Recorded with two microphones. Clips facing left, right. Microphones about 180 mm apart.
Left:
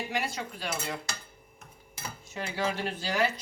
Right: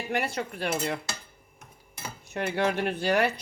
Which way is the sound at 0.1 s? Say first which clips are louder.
Right 4 dB; 60° right (ahead or behind).